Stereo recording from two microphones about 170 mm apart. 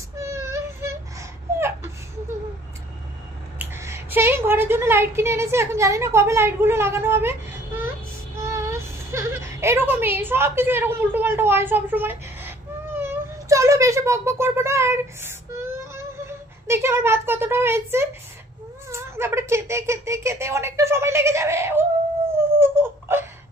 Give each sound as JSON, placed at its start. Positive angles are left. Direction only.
{"t": 0.1, "sound": "child singing", "side_deg": -15}
{"t": 3.5, "sound": "a woman's voice", "side_deg": -15}
{"t": 8.5, "sound": "a sound", "side_deg": -15}
{"t": 18.9, "sound": "speech", "side_deg": -15}
{"t": 22.4, "sound": "laughter", "side_deg": -15}